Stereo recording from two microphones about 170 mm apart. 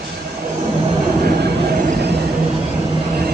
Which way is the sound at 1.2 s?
60° right (ahead or behind).